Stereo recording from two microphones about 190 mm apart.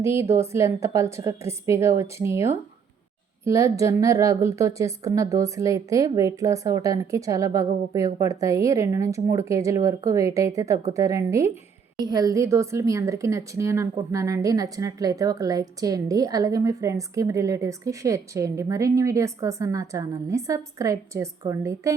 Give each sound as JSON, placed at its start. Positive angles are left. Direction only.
{"t": 0.0, "sound": "a woman's voice", "side_deg": -15}